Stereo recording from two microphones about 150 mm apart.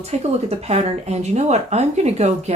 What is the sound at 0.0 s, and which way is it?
Speech, 45° right (ahead or behind).